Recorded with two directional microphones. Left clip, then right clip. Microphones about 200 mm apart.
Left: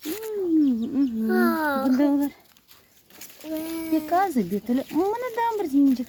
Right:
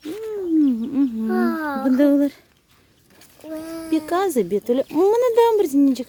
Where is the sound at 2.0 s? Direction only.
40° right (ahead or behind).